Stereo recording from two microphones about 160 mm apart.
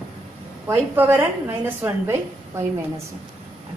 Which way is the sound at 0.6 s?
15° right (ahead or behind).